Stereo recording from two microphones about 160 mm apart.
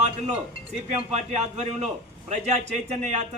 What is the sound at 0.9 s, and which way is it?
A man's voice, 45° right (ahead or behind).